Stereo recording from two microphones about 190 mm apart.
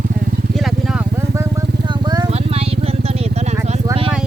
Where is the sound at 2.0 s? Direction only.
20° right (ahead or behind).